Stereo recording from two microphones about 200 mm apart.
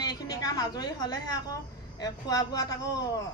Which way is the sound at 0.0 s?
20° left (ahead or behind).